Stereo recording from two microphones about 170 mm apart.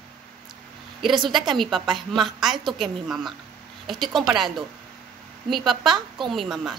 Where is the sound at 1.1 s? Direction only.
30° right (ahead or behind).